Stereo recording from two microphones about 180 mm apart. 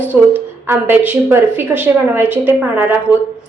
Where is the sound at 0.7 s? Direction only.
10° right (ahead or behind).